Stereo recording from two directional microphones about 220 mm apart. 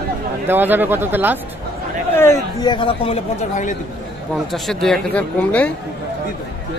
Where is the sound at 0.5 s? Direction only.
10° right (ahead or behind).